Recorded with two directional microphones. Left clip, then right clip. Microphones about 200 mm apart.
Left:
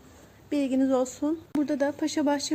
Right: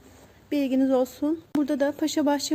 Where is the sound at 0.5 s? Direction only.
15° right (ahead or behind).